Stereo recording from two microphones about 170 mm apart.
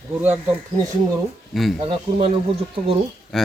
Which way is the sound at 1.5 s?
Centre (ahead or behind).